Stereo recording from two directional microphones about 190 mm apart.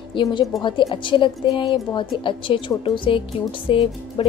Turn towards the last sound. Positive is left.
turn(degrees=30)  # may be behind; listen again after turning